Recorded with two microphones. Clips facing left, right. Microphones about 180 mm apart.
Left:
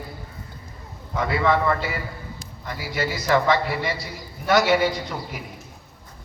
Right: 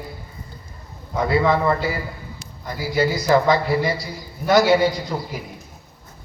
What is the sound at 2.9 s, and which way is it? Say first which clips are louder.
A man's voice: right 4 dB; 35° right (ahead or behind).